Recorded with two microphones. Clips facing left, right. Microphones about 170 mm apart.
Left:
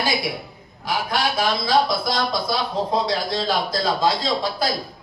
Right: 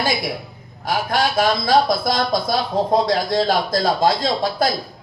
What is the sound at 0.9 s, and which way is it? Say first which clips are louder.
Speech: right 3 dB; 50° right (ahead or behind).